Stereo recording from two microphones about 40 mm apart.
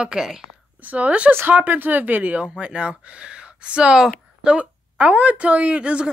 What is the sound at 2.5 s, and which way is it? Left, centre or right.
A woman's voice, right.